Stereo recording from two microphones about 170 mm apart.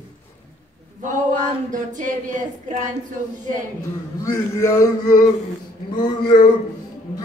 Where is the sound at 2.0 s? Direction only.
50° right (ahead or behind).